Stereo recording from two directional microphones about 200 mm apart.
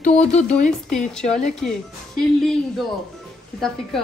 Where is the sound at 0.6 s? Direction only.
5° left (ahead or behind).